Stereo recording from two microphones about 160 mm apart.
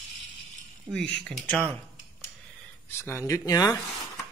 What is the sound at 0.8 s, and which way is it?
Speech, centre (ahead or behind).